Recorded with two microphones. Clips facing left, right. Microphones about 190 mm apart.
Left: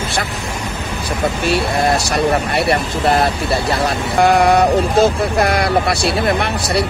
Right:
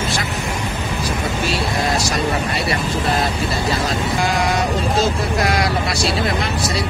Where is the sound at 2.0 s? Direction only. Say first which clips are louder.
Left 4 dB; 60° left (ahead or behind).